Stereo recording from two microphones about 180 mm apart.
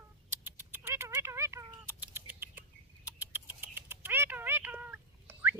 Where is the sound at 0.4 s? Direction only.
10° right (ahead or behind).